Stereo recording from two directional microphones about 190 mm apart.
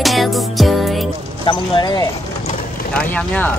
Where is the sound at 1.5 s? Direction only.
20° left (ahead or behind).